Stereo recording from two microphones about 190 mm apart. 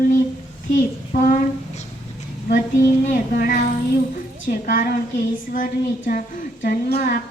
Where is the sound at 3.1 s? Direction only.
45° left (ahead or behind).